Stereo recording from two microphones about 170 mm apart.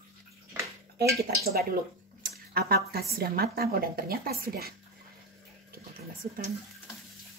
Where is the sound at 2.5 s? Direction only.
65° right (ahead or behind).